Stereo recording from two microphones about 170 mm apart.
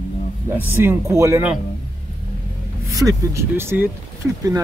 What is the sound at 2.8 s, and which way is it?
Speech, 20° right (ahead or behind).